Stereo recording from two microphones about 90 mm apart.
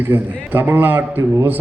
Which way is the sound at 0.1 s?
20° right (ahead or behind).